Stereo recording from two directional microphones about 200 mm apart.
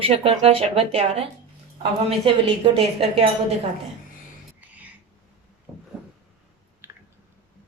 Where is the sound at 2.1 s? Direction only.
30° right (ahead or behind).